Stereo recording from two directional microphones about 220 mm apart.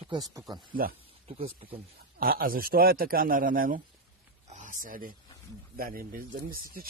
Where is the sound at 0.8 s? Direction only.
40° right (ahead or behind).